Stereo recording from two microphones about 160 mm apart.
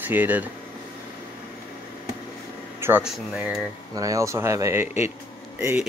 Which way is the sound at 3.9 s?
20° right (ahead or behind).